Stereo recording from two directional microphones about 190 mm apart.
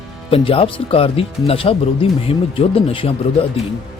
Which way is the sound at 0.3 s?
30° left (ahead or behind).